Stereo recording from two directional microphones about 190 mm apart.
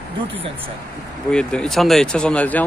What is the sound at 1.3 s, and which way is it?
Speech, 5° left (ahead or behind).